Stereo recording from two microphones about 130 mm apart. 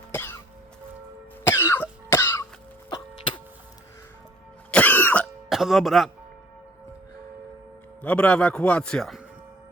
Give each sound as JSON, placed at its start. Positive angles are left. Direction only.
{"t": 0.1, "sound": "cough", "side_deg": 20}
{"t": 1.5, "sound": "cough", "side_deg": 20}
{"t": 4.7, "sound": "cough", "side_deg": 15}
{"t": 5.5, "sound": "speech", "side_deg": 0}
{"t": 8.0, "sound": "a man's voice", "side_deg": 10}